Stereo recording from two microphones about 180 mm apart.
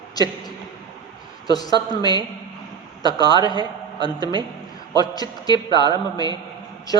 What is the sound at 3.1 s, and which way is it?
Speech, 20° left (ahead or behind).